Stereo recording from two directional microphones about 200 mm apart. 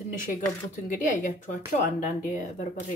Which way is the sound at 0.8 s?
40° left (ahead or behind).